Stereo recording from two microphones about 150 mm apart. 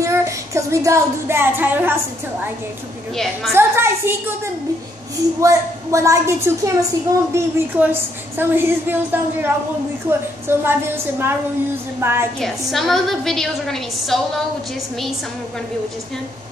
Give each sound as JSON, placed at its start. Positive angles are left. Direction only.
{"t": 0.0, "sound": "speech", "side_deg": -20}
{"t": 3.5, "sound": "a woman's voice", "side_deg": -15}
{"t": 5.4, "sound": "a woman's voice", "side_deg": -20}
{"t": 12.4, "sound": "a woman's voice", "side_deg": 0}